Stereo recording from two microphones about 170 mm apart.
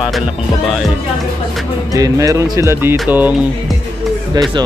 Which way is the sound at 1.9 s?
20° right (ahead or behind).